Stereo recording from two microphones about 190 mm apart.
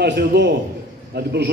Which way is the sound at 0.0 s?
60° right (ahead or behind).